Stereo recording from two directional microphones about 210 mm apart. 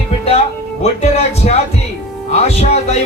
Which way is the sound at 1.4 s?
35° left (ahead or behind).